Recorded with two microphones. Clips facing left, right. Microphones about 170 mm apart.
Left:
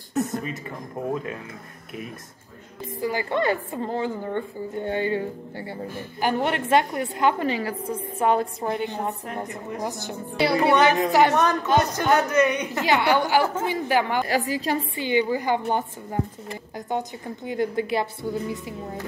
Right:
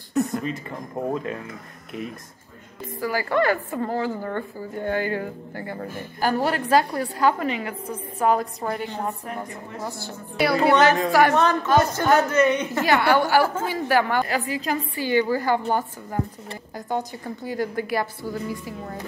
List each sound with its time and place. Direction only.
3.0 s a woman's voice: 20° left (ahead or behind)
6.2 s a woman's voice: 25° left (ahead or behind)
14.2 s a woman's voice: 35° left (ahead or behind)
15.0 s a woman's voice: 20° left (ahead or behind)